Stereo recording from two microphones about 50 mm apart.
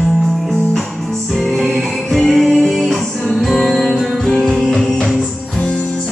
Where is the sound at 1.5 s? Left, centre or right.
Centre.